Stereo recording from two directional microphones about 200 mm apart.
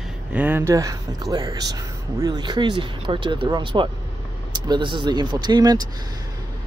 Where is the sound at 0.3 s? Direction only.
10° right (ahead or behind).